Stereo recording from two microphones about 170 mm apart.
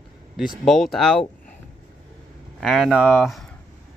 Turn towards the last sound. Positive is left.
turn(degrees=0)  # may be behind; listen again after turning